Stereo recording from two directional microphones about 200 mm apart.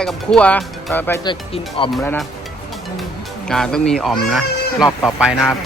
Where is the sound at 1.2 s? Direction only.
25° left (ahead or behind).